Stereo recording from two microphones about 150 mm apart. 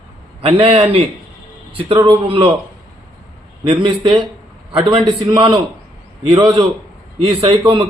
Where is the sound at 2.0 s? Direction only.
35° right (ahead or behind).